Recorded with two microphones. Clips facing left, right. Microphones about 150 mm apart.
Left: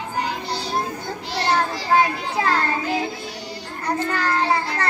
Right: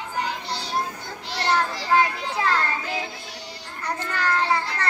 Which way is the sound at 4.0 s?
45° left (ahead or behind).